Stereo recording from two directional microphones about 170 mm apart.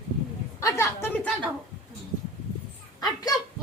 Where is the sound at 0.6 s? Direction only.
15° left (ahead or behind).